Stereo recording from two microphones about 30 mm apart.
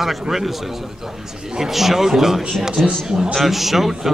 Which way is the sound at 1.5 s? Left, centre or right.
Centre.